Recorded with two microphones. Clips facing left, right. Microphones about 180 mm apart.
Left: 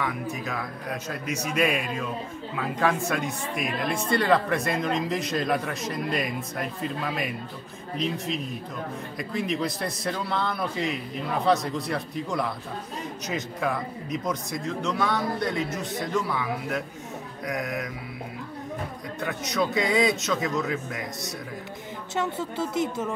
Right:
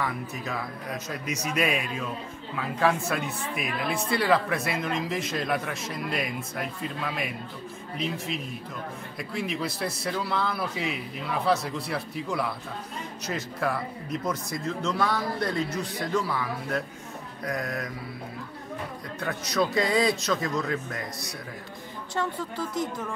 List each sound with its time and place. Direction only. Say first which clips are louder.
0.0 s a man's voice: left 2 dB; centre (ahead or behind)
9.2 s a man's voice: left 3 dB; centre (ahead or behind)
19.5 s a man's voice: even; centre (ahead or behind)
22.1 s speech: left 2 dB; 25° left (ahead or behind)